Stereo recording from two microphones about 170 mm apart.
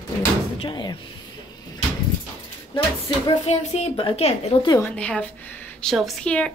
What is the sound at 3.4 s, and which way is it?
Speech, 40° left (ahead or behind).